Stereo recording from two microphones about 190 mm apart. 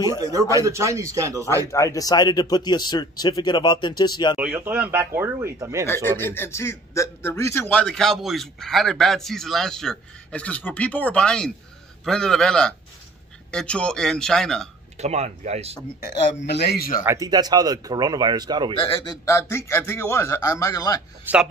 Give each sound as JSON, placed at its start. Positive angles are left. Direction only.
{"t": 0.0, "sound": "speech", "side_deg": -15}
{"t": 1.7, "sound": "speech", "side_deg": 15}
{"t": 4.4, "sound": "speech", "side_deg": -10}
{"t": 6.1, "sound": "speech", "side_deg": 10}
{"t": 15.0, "sound": "speech", "side_deg": -35}
{"t": 16.4, "sound": "a man's voice", "side_deg": 60}
{"t": 17.0, "sound": "speech", "side_deg": -15}
{"t": 18.9, "sound": "a man's voice", "side_deg": 20}
{"t": 21.3, "sound": "speech", "side_deg": -10}